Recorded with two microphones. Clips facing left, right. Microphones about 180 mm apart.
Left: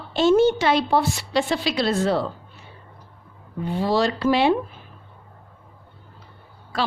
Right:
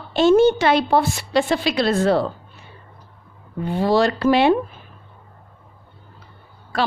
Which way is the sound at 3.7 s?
55° right (ahead or behind).